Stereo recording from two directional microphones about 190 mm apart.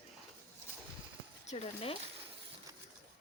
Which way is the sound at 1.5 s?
35° left (ahead or behind).